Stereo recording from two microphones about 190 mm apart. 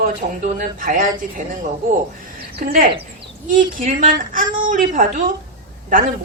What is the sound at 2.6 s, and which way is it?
Speech, 50° right (ahead or behind).